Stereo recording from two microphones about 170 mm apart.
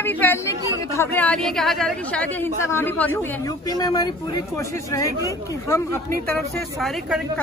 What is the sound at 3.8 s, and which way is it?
Speech, 20° left (ahead or behind).